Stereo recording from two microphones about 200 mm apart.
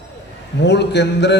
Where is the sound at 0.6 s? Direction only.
60° left (ahead or behind).